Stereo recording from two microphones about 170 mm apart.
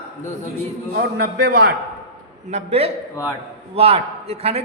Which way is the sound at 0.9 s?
70° right (ahead or behind).